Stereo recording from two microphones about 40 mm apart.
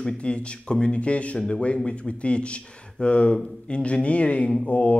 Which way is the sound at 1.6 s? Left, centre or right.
Left.